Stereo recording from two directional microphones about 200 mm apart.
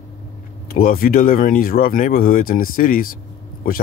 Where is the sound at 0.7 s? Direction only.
45° left (ahead or behind).